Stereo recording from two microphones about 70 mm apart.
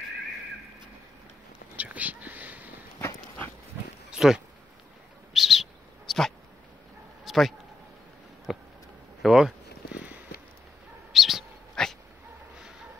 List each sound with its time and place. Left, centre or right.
1.8 s whispering: right
4.1 s a sound: centre
5.3 s bird: centre
7.2 s a sound: centre
9.2 s speech: centre
9.9 s clip-clop: right
11.1 s bird: centre
11.7 s dog: centre